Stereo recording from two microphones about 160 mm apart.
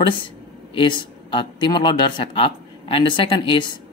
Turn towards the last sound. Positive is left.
turn(degrees=30)  # may be behind; listen again after turning